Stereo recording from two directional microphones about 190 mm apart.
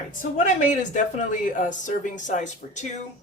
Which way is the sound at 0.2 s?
40° left (ahead or behind).